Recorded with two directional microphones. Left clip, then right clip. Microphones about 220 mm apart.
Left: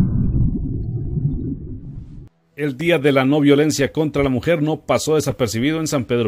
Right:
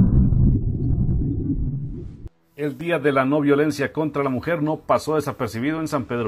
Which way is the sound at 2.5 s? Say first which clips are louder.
Left 5 dB; 50° left (ahead or behind).